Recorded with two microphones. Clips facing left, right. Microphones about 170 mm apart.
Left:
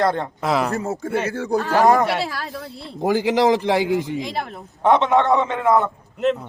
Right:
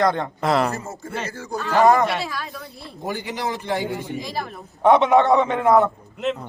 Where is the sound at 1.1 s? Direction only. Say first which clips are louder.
Left 6 dB; 60° left (ahead or behind).